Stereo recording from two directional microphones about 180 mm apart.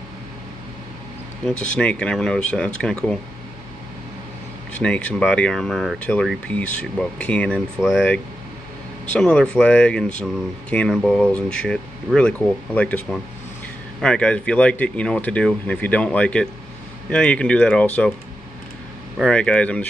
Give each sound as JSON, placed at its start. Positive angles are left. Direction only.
{"t": 1.5, "sound": "speech", "side_deg": 45}
{"t": 1.8, "sound": "speech", "side_deg": 5}
{"t": 4.8, "sound": "speech", "side_deg": 5}
{"t": 9.1, "sound": "speech", "side_deg": 5}
{"t": 19.1, "sound": "speech", "side_deg": 5}